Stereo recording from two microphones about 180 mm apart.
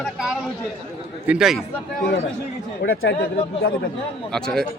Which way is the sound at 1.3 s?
5° right (ahead or behind).